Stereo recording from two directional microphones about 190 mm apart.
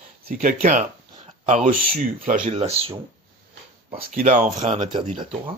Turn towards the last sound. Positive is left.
turn(degrees=-30)  # may be behind; listen again after turning